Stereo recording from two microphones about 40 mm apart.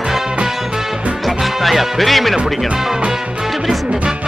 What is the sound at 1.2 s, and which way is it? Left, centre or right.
Music, centre.